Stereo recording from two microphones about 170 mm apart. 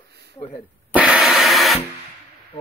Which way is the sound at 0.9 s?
5° right (ahead or behind).